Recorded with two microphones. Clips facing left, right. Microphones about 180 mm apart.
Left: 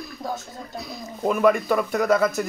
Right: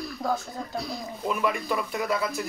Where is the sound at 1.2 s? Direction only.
45° left (ahead or behind).